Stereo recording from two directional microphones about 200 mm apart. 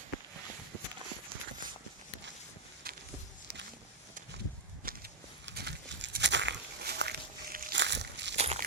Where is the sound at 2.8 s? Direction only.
50° right (ahead or behind).